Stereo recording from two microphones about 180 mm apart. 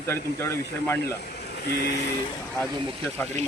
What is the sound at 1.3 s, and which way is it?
Vehicle, 65° left (ahead or behind).